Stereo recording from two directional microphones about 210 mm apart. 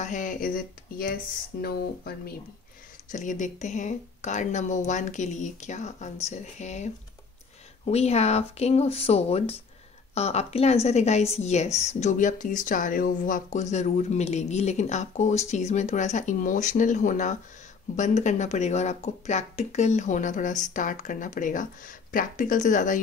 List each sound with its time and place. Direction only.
0.0 s speech: 35° left (ahead or behind)
3.1 s a woman's voice: 35° left (ahead or behind)